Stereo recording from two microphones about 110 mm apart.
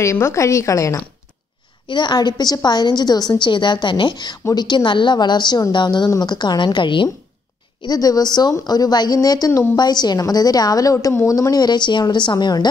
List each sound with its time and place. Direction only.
0.0 s a woman's voice: 25° left (ahead or behind)
1.9 s a woman's voice: 45° left (ahead or behind)
7.8 s a woman's voice: 35° left (ahead or behind)